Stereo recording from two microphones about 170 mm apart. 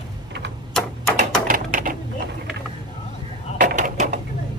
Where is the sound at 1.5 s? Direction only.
55° right (ahead or behind).